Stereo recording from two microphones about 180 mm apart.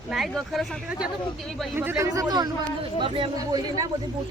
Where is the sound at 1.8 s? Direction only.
15° right (ahead or behind).